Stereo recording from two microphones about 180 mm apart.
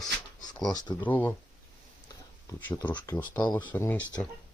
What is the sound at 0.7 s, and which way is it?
Speech, 25° left (ahead or behind).